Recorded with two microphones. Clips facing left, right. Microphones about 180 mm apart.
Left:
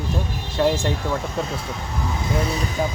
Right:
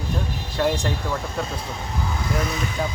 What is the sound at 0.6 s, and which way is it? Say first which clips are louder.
Speech: left 3 dB; 20° left (ahead or behind).